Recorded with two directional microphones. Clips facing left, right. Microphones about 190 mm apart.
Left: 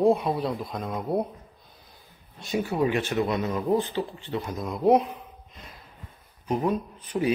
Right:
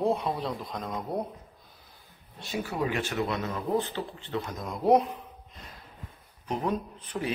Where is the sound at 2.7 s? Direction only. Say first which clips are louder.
Left 5 dB; 20° left (ahead or behind).